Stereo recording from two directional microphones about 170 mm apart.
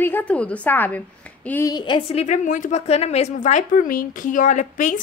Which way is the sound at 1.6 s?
25° left (ahead or behind).